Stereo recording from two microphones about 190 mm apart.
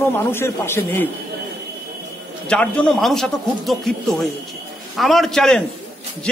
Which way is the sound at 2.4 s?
5° left (ahead or behind).